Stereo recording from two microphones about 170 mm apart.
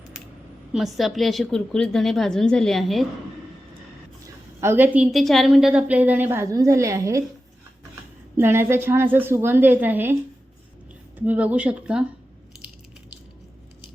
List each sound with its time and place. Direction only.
0.7 s a woman's voice: centre (ahead or behind)
4.6 s a woman's voice: 15° right (ahead or behind)
8.4 s a woman's voice: 15° right (ahead or behind)
11.3 s a woman's voice: 10° right (ahead or behind)